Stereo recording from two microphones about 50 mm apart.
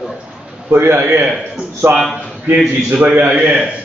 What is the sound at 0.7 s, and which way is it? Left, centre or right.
Speech, right.